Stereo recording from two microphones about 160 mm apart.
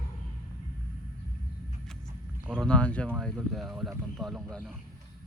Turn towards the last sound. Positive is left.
turn(degrees=0)  # may be behind; listen again after turning